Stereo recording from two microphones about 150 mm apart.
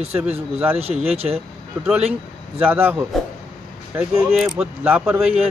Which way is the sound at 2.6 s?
15° right (ahead or behind).